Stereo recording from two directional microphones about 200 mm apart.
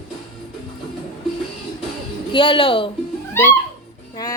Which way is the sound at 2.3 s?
25° left (ahead or behind).